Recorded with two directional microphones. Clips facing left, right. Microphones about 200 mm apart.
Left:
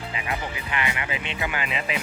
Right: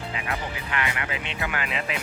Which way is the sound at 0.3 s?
10° left (ahead or behind).